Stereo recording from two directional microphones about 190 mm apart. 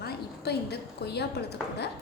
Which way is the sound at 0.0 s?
60° left (ahead or behind).